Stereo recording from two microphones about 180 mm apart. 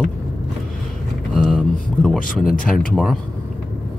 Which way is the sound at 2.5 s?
50° left (ahead or behind).